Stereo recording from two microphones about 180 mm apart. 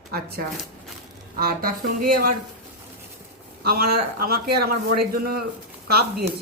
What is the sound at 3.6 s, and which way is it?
A man's voice, 55° right (ahead or behind).